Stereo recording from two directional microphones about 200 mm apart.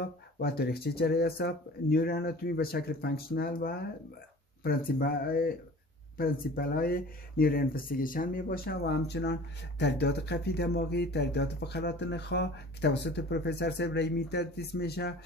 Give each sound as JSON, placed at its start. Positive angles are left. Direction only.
{"t": 0.0, "sound": "speech", "side_deg": 50}